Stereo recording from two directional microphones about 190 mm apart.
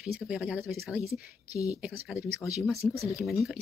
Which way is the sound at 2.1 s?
15° left (ahead or behind).